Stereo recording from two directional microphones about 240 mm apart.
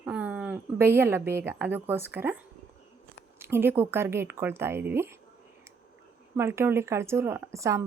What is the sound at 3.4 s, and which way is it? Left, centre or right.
Speech, centre.